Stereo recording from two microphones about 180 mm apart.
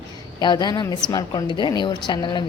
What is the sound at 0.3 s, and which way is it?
A woman's voice, 20° left (ahead or behind).